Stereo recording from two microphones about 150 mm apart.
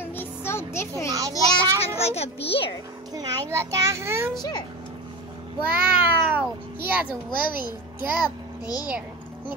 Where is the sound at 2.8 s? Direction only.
25° right (ahead or behind).